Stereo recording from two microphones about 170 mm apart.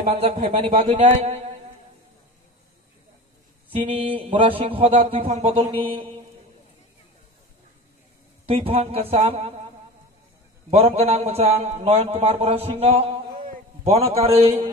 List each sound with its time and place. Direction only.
0.2 s a man's voice: 35° right (ahead or behind)
3.7 s a man's voice: 30° right (ahead or behind)
8.5 s a man's voice: 35° right (ahead or behind)
10.7 s a man's voice: 40° right (ahead or behind)